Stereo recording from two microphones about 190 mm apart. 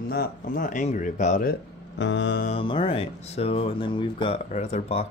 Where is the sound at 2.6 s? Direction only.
25° left (ahead or behind).